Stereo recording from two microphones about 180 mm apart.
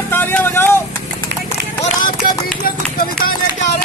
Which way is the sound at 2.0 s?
55° left (ahead or behind).